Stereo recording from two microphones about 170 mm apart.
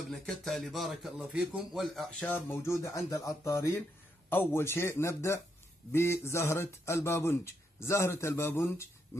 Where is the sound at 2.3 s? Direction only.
15° left (ahead or behind).